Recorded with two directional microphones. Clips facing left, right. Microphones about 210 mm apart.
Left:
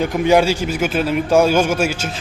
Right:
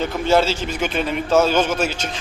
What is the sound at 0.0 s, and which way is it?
A man's voice, 15° left (ahead or behind).